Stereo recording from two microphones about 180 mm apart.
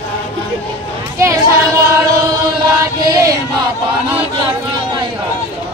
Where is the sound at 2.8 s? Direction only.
20° right (ahead or behind).